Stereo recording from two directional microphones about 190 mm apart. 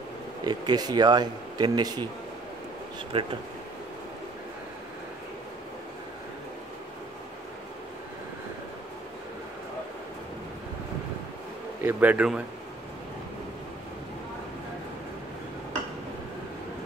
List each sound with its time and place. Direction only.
0.4 s speech: 20° right (ahead or behind)
3.1 s speech: 30° right (ahead or behind)
11.8 s speech: 10° right (ahead or behind)